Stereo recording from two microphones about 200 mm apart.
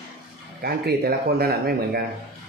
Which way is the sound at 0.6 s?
50° right (ahead or behind).